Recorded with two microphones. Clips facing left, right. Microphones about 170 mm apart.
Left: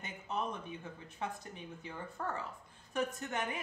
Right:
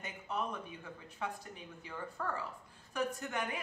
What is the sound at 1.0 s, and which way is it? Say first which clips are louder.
Speech: right 1 dB; 20° left (ahead or behind).